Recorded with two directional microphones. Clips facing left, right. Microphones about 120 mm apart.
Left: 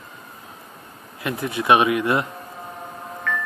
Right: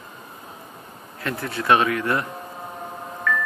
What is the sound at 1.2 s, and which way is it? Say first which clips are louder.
A man's voice: left 2 dB; 15° left (ahead or behind).